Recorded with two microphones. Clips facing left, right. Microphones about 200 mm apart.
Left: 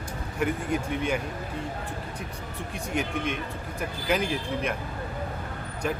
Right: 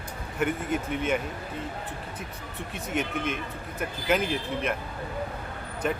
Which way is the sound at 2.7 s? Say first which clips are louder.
Even; centre (ahead or behind).